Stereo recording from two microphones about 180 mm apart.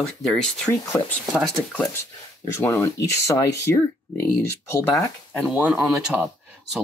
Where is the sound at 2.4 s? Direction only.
15° left (ahead or behind).